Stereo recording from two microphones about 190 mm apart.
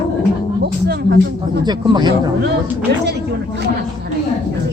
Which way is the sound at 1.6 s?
20° right (ahead or behind).